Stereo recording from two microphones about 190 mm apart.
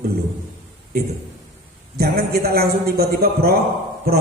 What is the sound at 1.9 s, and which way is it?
A man's voice, 55° right (ahead or behind).